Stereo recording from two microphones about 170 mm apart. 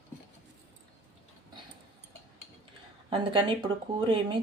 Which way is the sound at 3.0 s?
30° right (ahead or behind).